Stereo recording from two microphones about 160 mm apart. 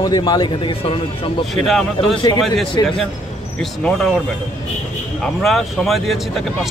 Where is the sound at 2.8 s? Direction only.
25° left (ahead or behind).